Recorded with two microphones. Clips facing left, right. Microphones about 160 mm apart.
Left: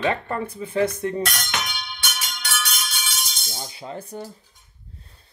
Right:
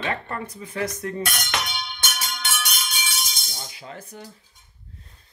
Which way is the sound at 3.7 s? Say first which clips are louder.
Left 6 dB; 30° left (ahead or behind).